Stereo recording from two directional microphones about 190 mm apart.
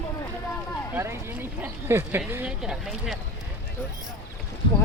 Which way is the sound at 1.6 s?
10° right (ahead or behind).